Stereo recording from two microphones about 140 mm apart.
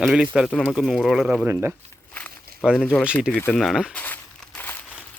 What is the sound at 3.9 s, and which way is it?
Crumpling, 10° left (ahead or behind).